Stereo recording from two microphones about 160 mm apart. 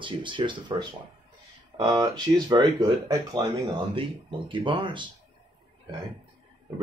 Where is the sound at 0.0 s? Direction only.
30° right (ahead or behind).